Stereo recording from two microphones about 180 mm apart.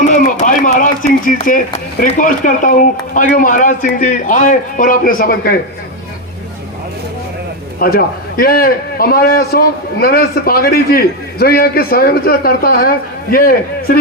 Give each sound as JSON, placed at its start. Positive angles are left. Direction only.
{"t": 0.0, "sound": "speech", "side_deg": 45}
{"t": 7.8, "sound": "a man's voice", "side_deg": 55}